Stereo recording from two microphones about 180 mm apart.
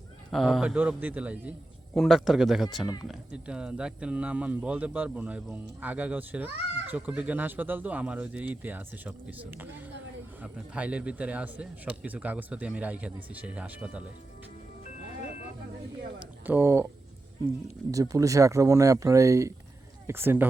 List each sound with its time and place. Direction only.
0.3 s speech: centre (ahead or behind)
2.8 s speech: 20° left (ahead or behind)
3.1 s speech: 5° right (ahead or behind)
16.5 s speech: 15° right (ahead or behind)
17.9 s speech: 20° right (ahead or behind)